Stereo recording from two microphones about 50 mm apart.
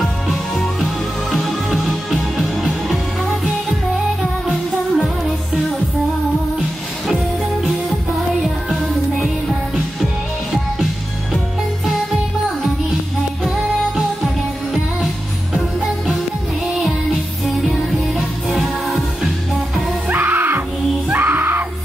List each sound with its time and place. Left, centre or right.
0.0 s music: centre
7.6 s music: centre
13.4 s music: centre
18.5 s music: centre
20.1 s music: right